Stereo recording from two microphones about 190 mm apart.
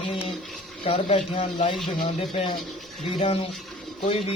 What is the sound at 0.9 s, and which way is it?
Speech, 30° left (ahead or behind).